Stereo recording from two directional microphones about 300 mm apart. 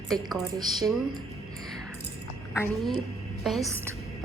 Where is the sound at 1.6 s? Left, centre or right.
Centre.